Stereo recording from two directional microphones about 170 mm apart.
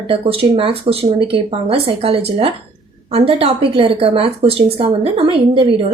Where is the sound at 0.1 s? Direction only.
35° right (ahead or behind).